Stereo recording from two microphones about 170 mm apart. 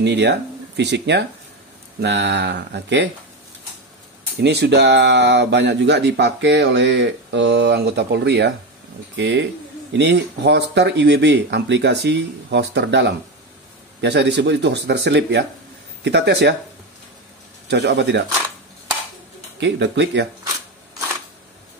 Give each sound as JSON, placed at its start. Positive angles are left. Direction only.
{"t": 0.0, "sound": "speech", "side_deg": -90}
{"t": 4.4, "sound": "speech", "side_deg": -85}
{"t": 17.6, "sound": "speech", "side_deg": -90}
{"t": 19.6, "sound": "speech", "side_deg": -90}